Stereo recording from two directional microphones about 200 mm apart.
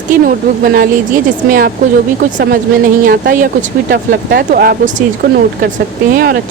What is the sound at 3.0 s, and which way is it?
Speech, 45° right (ahead or behind).